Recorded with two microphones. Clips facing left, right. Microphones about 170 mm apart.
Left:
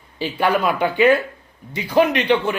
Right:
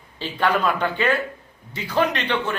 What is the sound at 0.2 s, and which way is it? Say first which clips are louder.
A man's voice: left 3 dB; 10° left (ahead or behind).